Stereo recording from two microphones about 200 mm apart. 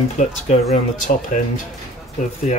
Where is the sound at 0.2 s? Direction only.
35° left (ahead or behind).